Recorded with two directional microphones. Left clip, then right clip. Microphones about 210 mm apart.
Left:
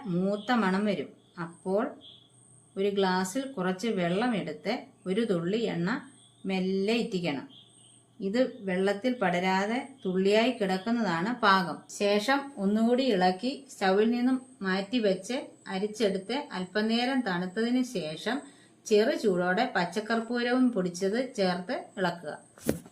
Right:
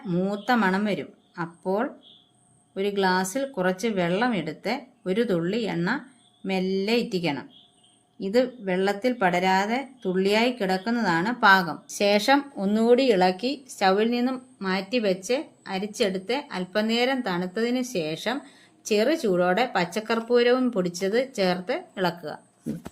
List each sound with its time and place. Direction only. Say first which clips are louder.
0.1 s speech: right 4 dB; 40° right (ahead or behind)